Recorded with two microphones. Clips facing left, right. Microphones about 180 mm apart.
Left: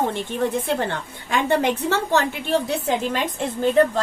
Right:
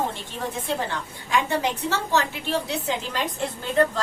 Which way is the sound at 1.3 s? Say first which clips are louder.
Left 4 dB; 55° left (ahead or behind).